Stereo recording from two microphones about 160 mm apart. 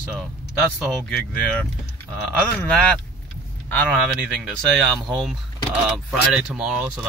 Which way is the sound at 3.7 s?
10° left (ahead or behind).